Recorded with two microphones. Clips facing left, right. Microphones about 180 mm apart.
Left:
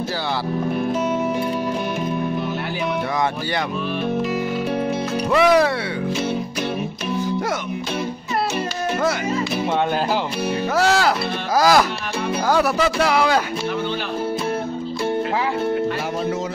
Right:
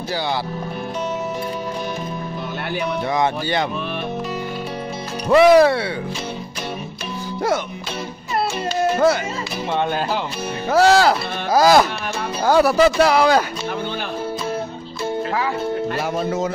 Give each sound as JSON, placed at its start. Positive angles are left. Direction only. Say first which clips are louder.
{"t": 5.3, "sound": "speech", "louder": "right 5 dB", "side_deg": -30}
{"t": 10.7, "sound": "speech", "louder": "right 6 dB", "side_deg": -30}